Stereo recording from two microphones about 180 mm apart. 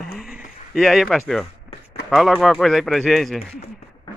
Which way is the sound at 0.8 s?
Centre (ahead or behind).